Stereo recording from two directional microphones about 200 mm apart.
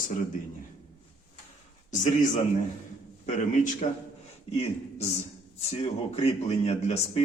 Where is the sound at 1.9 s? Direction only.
40° left (ahead or behind).